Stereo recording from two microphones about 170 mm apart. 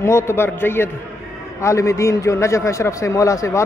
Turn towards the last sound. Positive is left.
turn(degrees=20)  # may be behind; listen again after turning